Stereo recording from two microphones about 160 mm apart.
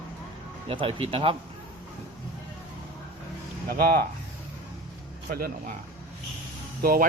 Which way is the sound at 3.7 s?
70° right (ahead or behind).